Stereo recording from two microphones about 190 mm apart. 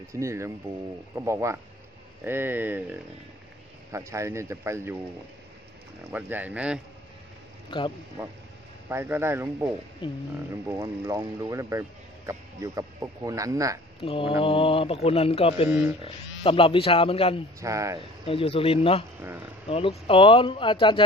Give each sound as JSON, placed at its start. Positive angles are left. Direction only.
{"t": 0.1, "sound": "speech", "side_deg": -15}
{"t": 6.1, "sound": "speech", "side_deg": -10}
{"t": 7.7, "sound": "speech", "side_deg": 25}
{"t": 8.8, "sound": "speech", "side_deg": -10}
{"t": 10.0, "sound": "speech", "side_deg": 25}
{"t": 10.7, "sound": "speech", "side_deg": -15}
{"t": 14.0, "sound": "speech", "side_deg": 30}
{"t": 17.6, "sound": "speech", "side_deg": -15}
{"t": 18.2, "sound": "speech", "side_deg": 30}